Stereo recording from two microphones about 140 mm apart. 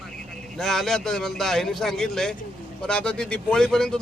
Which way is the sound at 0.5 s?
5° left (ahead or behind).